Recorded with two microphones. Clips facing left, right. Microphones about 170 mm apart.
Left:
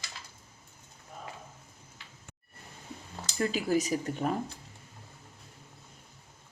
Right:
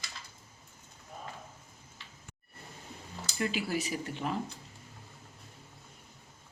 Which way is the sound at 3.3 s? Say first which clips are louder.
Left 5 dB; 40° left (ahead or behind).